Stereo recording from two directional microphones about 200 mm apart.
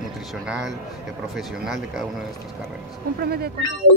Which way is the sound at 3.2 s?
50° right (ahead or behind).